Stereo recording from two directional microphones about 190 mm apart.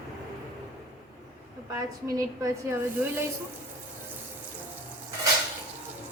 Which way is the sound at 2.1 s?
15° right (ahead or behind).